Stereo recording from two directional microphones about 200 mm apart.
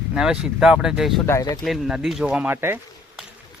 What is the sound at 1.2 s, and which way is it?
Speech, 15° left (ahead or behind).